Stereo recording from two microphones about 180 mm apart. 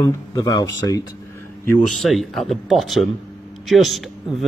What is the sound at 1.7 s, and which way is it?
Speech, 5° left (ahead or behind).